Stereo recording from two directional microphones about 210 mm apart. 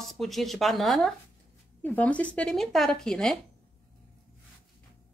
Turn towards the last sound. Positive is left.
turn(degrees=0)  # may be behind; listen again after turning